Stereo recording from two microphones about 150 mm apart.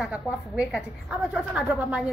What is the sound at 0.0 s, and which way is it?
A woman's voice, 5° right (ahead or behind).